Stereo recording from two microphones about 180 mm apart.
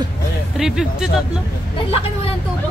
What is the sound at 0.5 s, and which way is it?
Speech, 5° right (ahead or behind).